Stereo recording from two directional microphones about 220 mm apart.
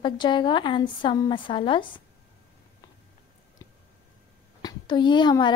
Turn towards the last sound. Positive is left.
turn(degrees=20)  # may be behind; listen again after turning